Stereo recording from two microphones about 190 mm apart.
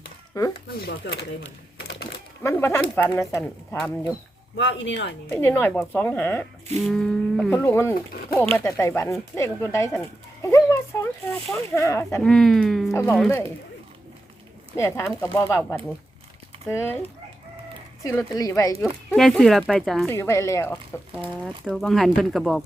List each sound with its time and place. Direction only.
0.4 s speech: 20° left (ahead or behind)
0.8 s speech: 60° left (ahead or behind)
2.4 s speech: 10° left (ahead or behind)
4.5 s speech: 70° left (ahead or behind)
5.3 s speech: 10° left (ahead or behind)
12.3 s speech: centre (ahead or behind)
14.8 s speech: 15° left (ahead or behind)
19.1 s speech: centre (ahead or behind)
20.1 s speech: 15° left (ahead or behind)
21.1 s speech: 5° right (ahead or behind)